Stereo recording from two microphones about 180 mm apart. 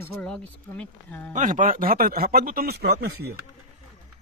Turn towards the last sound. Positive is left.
turn(degrees=-60)  # may be behind; listen again after turning